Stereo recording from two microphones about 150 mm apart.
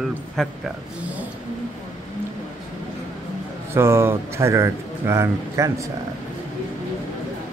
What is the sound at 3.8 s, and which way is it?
Speech, 15° right (ahead or behind).